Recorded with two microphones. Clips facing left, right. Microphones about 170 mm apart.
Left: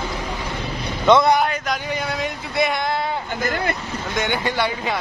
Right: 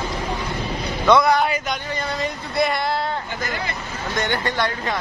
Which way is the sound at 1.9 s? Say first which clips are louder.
Left 1 dB; 5° left (ahead or behind).